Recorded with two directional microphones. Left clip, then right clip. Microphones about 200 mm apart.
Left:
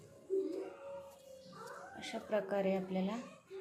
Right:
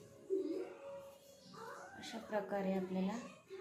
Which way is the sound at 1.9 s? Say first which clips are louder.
Left 5 dB; 35° left (ahead or behind).